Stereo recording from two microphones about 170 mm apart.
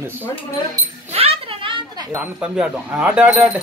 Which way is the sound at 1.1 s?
35° right (ahead or behind).